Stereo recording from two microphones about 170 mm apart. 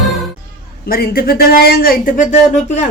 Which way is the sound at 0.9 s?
60° left (ahead or behind).